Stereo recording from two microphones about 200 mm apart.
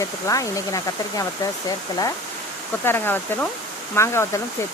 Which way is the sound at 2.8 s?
10° left (ahead or behind).